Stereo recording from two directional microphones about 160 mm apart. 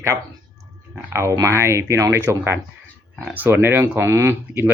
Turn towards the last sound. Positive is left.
turn(degrees=-15)  # may be behind; listen again after turning